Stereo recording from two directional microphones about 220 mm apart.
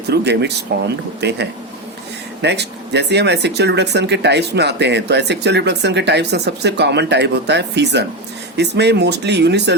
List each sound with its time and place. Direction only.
0.1 s speech: 50° right (ahead or behind)